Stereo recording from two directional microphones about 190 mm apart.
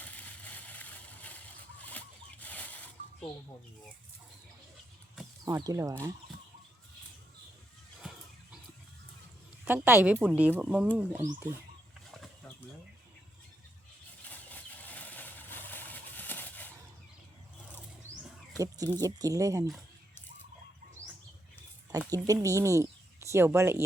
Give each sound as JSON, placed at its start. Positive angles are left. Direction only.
{"t": 0.0, "sound": "a sound", "side_deg": 10}
{"t": 5.5, "sound": "speech", "side_deg": -15}
{"t": 8.0, "sound": "a sound", "side_deg": -5}
{"t": 9.6, "sound": "speech", "side_deg": -10}
{"t": 14.3, "sound": "vehicle", "side_deg": 10}
{"t": 18.5, "sound": "speech", "side_deg": -15}
{"t": 21.9, "sound": "speech", "side_deg": -20}